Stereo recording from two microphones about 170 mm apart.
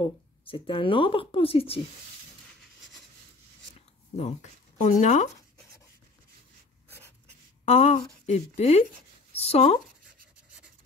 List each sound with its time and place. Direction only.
0.0 s speech: 30° left (ahead or behind)
4.2 s speech: 45° left (ahead or behind)
7.6 s speech: 40° left (ahead or behind)